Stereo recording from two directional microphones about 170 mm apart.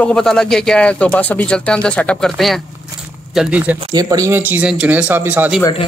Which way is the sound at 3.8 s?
25° right (ahead or behind).